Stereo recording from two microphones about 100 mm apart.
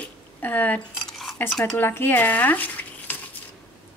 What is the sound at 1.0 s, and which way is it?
Dishes, 5° left (ahead or behind).